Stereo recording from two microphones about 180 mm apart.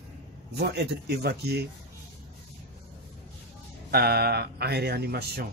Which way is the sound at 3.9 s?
60° right (ahead or behind).